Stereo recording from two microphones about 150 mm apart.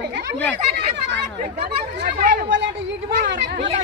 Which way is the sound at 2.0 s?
60° right (ahead or behind).